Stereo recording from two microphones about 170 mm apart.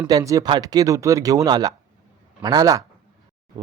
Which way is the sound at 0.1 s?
20° right (ahead or behind).